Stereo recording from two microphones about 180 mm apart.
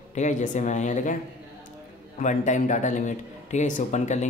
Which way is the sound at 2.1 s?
45° left (ahead or behind).